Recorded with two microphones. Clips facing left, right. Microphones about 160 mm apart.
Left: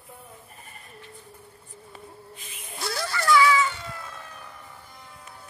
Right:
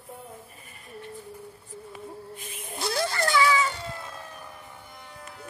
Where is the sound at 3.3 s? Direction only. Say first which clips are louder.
Left 5 dB; 35° right (ahead or behind).